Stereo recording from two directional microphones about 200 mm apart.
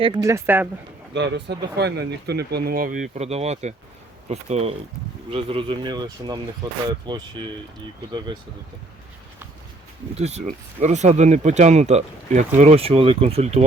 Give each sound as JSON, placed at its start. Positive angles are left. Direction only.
{"t": 0.0, "sound": "speech", "side_deg": -20}
{"t": 1.1, "sound": "speech", "side_deg": -60}
{"t": 10.2, "sound": "speech", "side_deg": -35}